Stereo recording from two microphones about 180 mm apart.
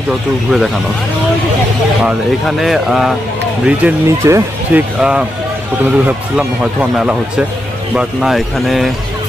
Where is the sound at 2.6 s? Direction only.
Centre (ahead or behind).